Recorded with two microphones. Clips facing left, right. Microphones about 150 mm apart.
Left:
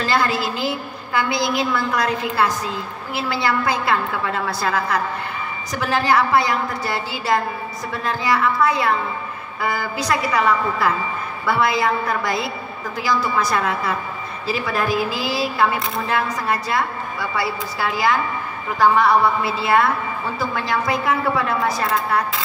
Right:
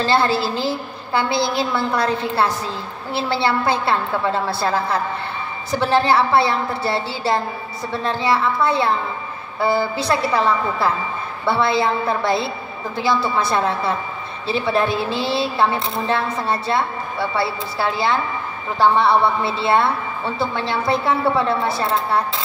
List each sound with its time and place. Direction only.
0.0 s speech: 30° right (ahead or behind)